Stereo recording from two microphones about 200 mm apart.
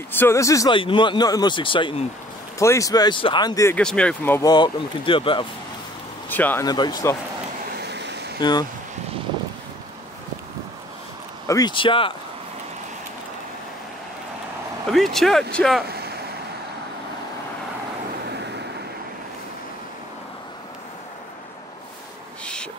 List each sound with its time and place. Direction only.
0.1 s speech: 10° left (ahead or behind)
3.8 s speech: 5° left (ahead or behind); by 5.5 s 25° left (ahead or behind)
6.2 s speech: 10° left (ahead or behind)
7.7 s a sound: 55° right (ahead or behind)
8.4 s speech: 20° left (ahead or behind)
11.4 s speech: 20° left (ahead or behind)
14.9 s speech: centre (ahead or behind)
15.9 s vehicle: 50° right (ahead or behind)
22.4 s insect: 5° left (ahead or behind)